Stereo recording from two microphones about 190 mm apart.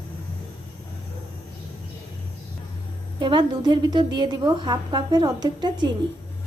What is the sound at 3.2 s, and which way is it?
A woman's voice, 25° right (ahead or behind).